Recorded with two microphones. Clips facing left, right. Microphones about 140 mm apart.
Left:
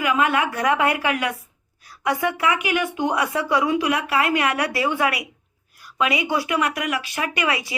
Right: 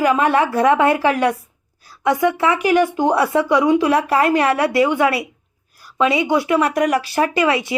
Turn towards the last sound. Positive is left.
turn(degrees=-25)  # may be behind; listen again after turning